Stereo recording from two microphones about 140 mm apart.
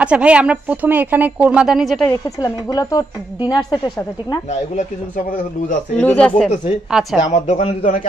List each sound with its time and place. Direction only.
0.0 s speech: 10° right (ahead or behind)
2.2 s a woman's voice: 25° left (ahead or behind)
4.5 s speech: 55° left (ahead or behind)
5.9 s speech: 10° left (ahead or behind)
7.2 s speech: 55° left (ahead or behind)